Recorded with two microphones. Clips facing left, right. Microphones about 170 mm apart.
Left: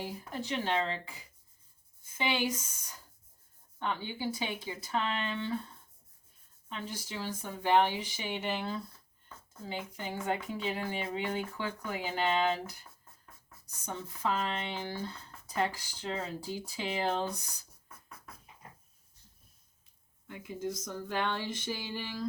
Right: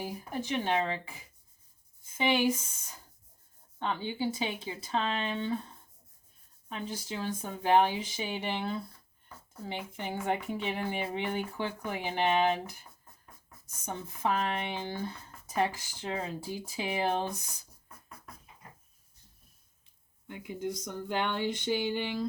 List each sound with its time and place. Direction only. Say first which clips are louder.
0.0 s speech: right 2 dB; 15° right (ahead or behind)
7.3 s speech: right 2 dB; 20° right (ahead or behind)
13.7 s speech: right 1 dB; 20° right (ahead or behind)
20.2 s speech: right 1 dB; 20° right (ahead or behind)